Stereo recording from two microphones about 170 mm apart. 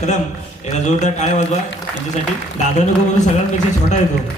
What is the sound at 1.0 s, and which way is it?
Speech, 45° left (ahead or behind).